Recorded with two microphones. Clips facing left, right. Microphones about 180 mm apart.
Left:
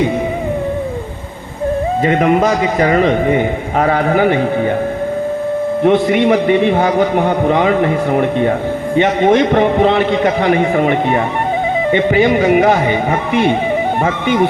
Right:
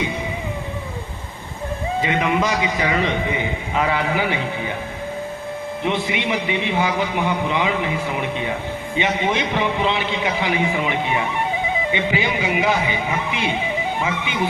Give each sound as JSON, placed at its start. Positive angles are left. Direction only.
{"t": 2.0, "sound": "a man's voice", "side_deg": 50}
{"t": 5.8, "sound": "a man's voice", "side_deg": 55}